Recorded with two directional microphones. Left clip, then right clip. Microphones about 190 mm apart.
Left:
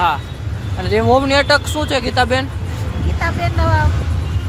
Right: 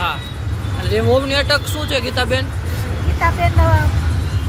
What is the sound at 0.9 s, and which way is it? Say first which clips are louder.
Speech: left 3 dB; 35° left (ahead or behind).